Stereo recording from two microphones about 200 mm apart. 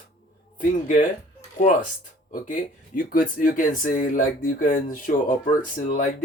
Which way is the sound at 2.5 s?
45° left (ahead or behind).